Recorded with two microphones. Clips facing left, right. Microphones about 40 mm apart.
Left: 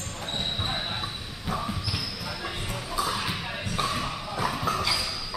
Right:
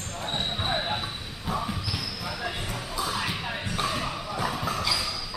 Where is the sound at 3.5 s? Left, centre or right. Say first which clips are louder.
Even; centre.